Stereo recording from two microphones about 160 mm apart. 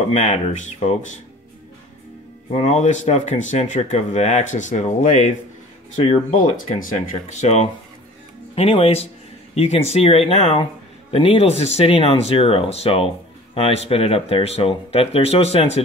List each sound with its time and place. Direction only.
0.1 s speech: 45° left (ahead or behind)
2.5 s speech: 45° left (ahead or behind)
6.3 s speech: 55° left (ahead or behind); by 15.8 s 40° left (ahead or behind)